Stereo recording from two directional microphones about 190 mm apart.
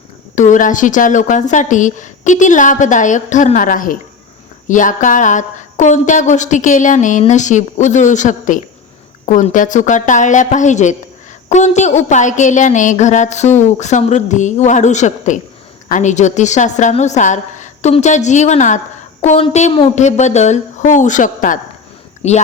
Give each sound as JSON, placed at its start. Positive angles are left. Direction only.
{"t": 0.3, "sound": "a woman's voice", "side_deg": 40}